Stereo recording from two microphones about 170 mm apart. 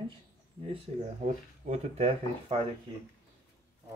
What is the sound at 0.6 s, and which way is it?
Speech, 35° right (ahead or behind).